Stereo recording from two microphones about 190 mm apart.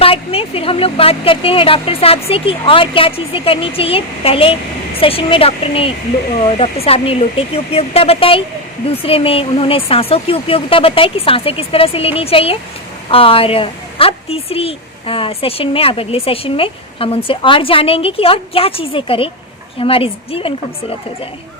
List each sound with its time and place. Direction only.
0.0 s a woman's voice: 30° left (ahead or behind)